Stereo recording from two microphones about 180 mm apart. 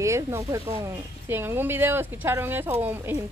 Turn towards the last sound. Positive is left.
turn(degrees=-10)  # may be behind; listen again after turning